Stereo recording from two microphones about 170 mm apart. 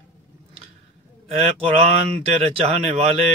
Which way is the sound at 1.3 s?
35° right (ahead or behind).